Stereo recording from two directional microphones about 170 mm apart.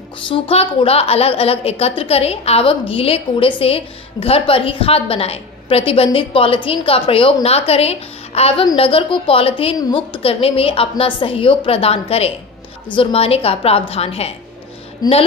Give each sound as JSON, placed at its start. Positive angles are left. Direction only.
{"t": 0.3, "sound": "a woman's voice", "side_deg": 35}
{"t": 15.0, "sound": "speech", "side_deg": 20}